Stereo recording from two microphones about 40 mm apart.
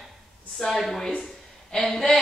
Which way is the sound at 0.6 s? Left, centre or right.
Centre.